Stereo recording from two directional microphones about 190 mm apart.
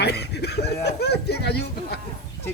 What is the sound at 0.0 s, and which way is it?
Speech, 60° left (ahead or behind).